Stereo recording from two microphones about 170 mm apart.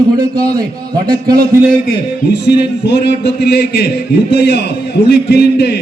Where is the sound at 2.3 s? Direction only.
80° left.